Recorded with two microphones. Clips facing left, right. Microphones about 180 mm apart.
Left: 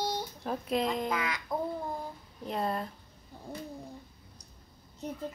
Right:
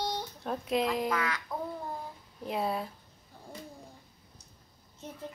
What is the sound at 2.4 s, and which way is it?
Speech, 5° right (ahead or behind).